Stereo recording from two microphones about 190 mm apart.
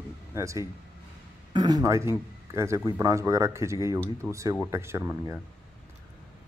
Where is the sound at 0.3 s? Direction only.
15° right (ahead or behind).